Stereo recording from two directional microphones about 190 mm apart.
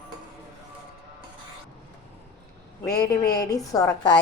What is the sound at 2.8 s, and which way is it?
A woman's voice, 20° left (ahead or behind).